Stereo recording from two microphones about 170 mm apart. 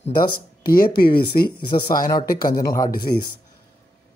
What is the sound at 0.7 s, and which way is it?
Speech, 60° left (ahead or behind).